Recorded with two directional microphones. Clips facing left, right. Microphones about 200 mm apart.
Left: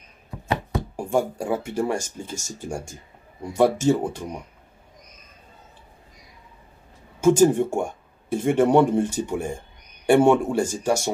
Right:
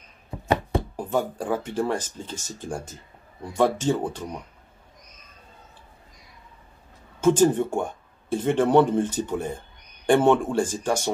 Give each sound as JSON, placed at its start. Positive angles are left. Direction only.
{"t": 0.5, "sound": "chopping", "side_deg": -30}
{"t": 0.9, "sound": "speech", "side_deg": 10}
{"t": 7.2, "sound": "speech", "side_deg": 10}